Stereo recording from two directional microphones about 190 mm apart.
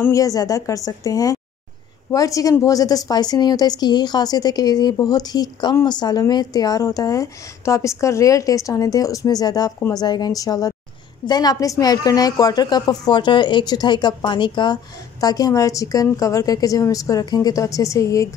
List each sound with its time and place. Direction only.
0.0 s a woman's voice: 15° left (ahead or behind)